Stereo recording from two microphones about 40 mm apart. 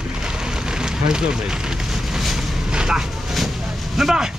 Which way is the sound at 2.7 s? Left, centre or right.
Centre.